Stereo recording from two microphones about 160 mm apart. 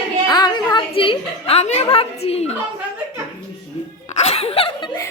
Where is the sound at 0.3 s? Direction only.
25° left (ahead or behind).